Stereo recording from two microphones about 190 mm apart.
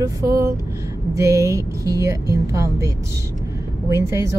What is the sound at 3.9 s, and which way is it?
Speech, 15° right (ahead or behind).